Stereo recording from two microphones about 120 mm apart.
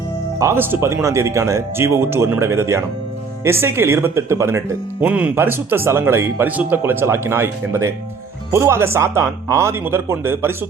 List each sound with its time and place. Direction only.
0.3 s speech: 20° right (ahead or behind)